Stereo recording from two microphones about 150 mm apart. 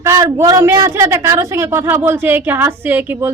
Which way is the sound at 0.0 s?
20° right (ahead or behind).